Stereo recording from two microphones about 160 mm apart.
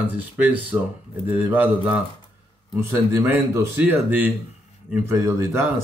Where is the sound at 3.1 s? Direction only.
15° right (ahead or behind).